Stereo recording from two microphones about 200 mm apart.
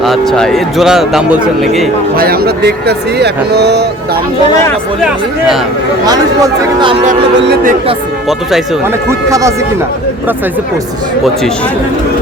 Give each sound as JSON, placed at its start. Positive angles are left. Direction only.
{"t": 0.0, "sound": "a man's voice", "side_deg": 0}
{"t": 2.1, "sound": "speech", "side_deg": -50}
{"t": 6.1, "sound": "speech", "side_deg": -20}
{"t": 7.3, "sound": "speech", "side_deg": -60}
{"t": 9.0, "sound": "speech", "side_deg": -15}